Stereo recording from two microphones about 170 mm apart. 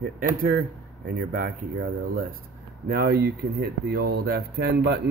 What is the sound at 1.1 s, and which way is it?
Speech, 50° right (ahead or behind).